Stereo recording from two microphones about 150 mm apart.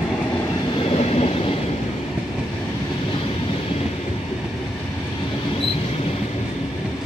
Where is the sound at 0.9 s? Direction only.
40° left (ahead or behind).